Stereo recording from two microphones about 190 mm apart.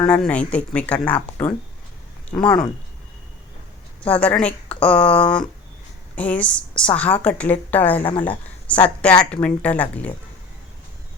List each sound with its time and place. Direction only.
0.0 s a woman's voice: 5° left (ahead or behind)
2.3 s speech: 5° left (ahead or behind)
4.1 s a woman's voice: 5° left (ahead or behind)